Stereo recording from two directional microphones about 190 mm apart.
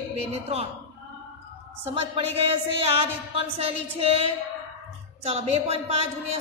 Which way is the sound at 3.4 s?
30° right (ahead or behind).